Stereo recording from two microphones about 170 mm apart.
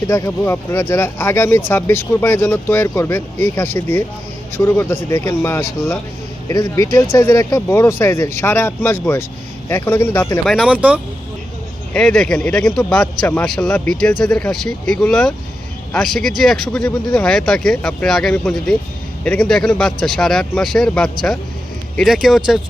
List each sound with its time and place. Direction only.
0.1 s speech: 15° left (ahead or behind)
10.4 s speech: 5° right (ahead or behind)
11.9 s speech: 5° left (ahead or behind)